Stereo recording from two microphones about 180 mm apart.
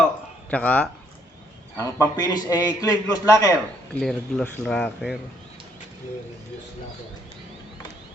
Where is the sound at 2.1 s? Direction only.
20° left (ahead or behind).